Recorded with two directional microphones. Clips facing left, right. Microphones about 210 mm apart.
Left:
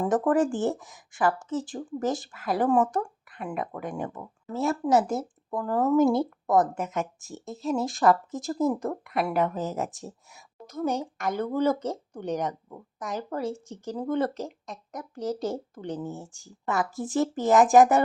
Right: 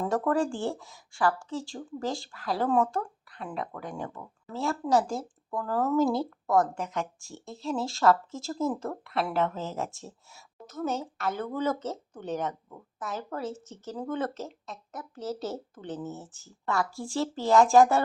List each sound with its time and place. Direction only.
0.0 s speech: 20° left (ahead or behind)